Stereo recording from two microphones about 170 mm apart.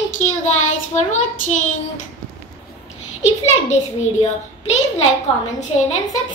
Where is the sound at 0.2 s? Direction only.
45° left (ahead or behind).